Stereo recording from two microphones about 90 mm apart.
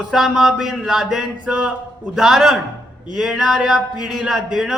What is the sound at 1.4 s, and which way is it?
Speech, 10° right (ahead or behind).